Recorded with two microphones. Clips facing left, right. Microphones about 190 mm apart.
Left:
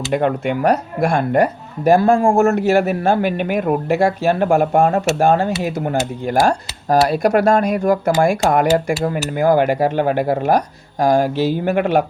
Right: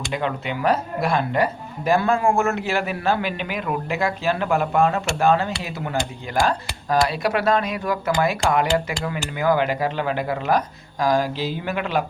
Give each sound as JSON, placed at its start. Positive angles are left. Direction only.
{"t": 0.1, "sound": "speech", "side_deg": 50}